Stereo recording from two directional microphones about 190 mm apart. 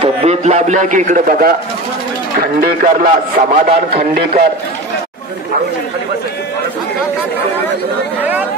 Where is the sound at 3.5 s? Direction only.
35° right (ahead or behind).